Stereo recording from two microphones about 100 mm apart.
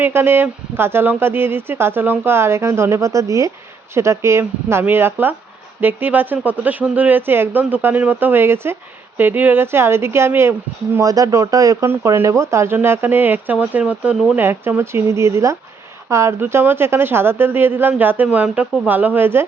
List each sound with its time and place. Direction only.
0.0 s a woman's voice: 20° right (ahead or behind)
11.0 s a woman's voice: 35° right (ahead or behind)